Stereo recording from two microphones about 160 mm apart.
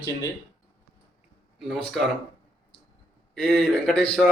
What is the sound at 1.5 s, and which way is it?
Speech, centre (ahead or behind).